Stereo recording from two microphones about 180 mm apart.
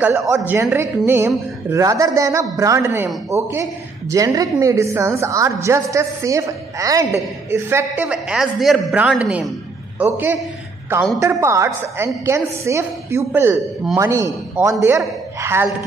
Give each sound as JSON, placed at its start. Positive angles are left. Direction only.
{"t": 0.3, "sound": "a woman's voice", "side_deg": -15}